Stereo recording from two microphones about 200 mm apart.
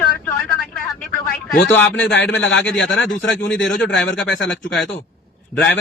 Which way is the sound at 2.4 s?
65° left (ahead or behind).